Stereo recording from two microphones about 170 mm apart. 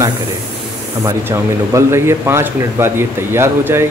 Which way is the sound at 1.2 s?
15° right (ahead or behind).